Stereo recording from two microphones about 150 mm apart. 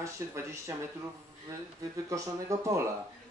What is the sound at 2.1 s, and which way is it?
Speech, 20° right (ahead or behind).